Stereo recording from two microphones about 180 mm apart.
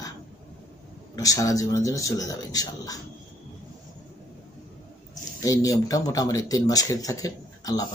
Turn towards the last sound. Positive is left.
turn(degrees=20)  # may be behind; listen again after turning